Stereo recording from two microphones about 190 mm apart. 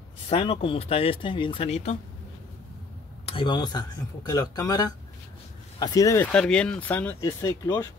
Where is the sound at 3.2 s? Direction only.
25° left (ahead or behind).